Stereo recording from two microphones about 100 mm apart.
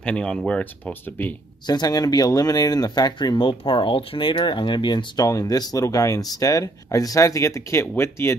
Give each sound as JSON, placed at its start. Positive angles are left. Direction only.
{"t": 0.0, "sound": "speech", "side_deg": 10}
{"t": 1.7, "sound": "speech", "side_deg": 40}